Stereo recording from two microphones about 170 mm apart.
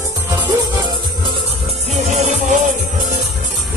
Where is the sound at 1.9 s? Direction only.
40° right (ahead or behind).